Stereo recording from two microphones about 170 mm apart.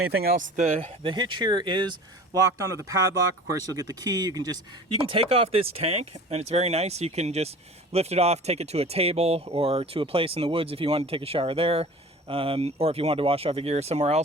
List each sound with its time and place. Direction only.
0.1 s speech: 65° right (ahead or behind)
0.5 s speech: 45° right (ahead or behind)
1.0 s speech: 25° right (ahead or behind)
5.0 s speech: 35° right (ahead or behind)